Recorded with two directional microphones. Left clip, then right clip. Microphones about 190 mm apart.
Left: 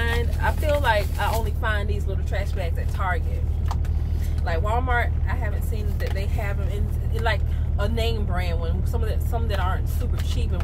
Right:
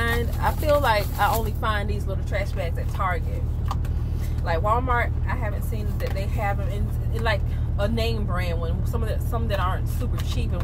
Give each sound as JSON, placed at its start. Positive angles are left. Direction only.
{"t": 0.0, "sound": "a sound", "side_deg": -15}
{"t": 2.3, "sound": "speech", "side_deg": 0}
{"t": 4.5, "sound": "speech", "side_deg": 0}
{"t": 7.8, "sound": "speech", "side_deg": 0}